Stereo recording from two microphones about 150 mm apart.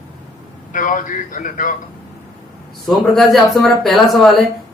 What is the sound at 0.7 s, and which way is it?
A man's voice, 60° left (ahead or behind).